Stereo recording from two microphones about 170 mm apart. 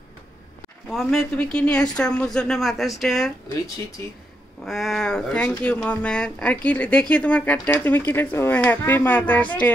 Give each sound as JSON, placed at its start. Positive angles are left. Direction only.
{"t": 0.8, "sound": "speech", "side_deg": 0}
{"t": 4.6, "sound": "speech", "side_deg": 0}